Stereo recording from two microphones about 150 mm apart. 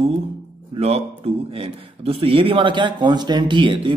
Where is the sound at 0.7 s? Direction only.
45° right (ahead or behind).